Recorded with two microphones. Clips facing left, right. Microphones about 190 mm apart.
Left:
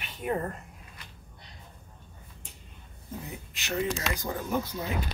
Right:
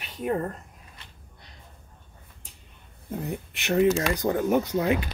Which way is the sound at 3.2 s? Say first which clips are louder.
Right 9 dB; 60° right (ahead or behind).